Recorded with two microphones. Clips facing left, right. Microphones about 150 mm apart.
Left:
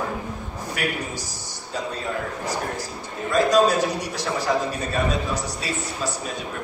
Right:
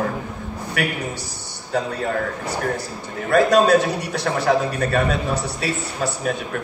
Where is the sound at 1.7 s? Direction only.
65° right (ahead or behind).